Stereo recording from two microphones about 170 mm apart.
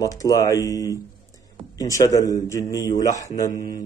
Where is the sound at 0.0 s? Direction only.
20° left (ahead or behind).